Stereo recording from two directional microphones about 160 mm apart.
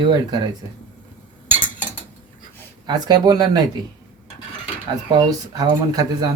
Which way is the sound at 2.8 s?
25° right (ahead or behind).